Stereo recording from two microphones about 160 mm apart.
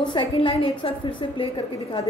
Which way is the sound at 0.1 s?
35° left (ahead or behind).